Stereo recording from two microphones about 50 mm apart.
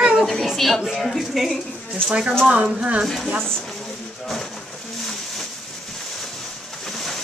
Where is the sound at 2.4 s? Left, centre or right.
Centre.